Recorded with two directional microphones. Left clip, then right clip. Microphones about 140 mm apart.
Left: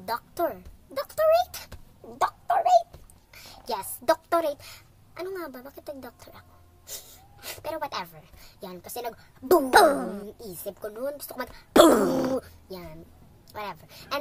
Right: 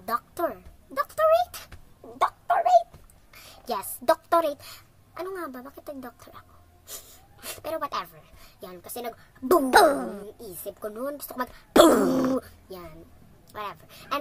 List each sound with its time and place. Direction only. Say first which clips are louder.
0.0 s a sound: even; 5° right (ahead or behind)
2.1 s gargling: right 1 dB; 5° right (ahead or behind)
2.5 s a sound: right 1 dB; 5° right (ahead or behind)
3.3 s a woman's voice: right 1 dB; 10° right (ahead or behind)
7.4 s a woman's voice: right 1 dB; 10° right (ahead or behind)
11.7 s a woman's voice: even; centre (ahead or behind)
12.4 s a child's voice: right 1 dB; 10° right (ahead or behind)